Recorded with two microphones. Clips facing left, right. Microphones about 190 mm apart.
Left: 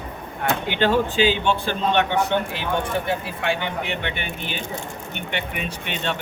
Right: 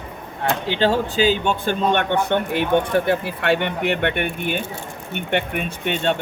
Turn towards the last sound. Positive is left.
turn(degrees=-45)  # may be behind; listen again after turning